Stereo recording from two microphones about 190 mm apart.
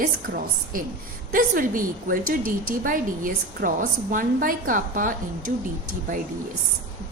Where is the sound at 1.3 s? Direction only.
45° right (ahead or behind).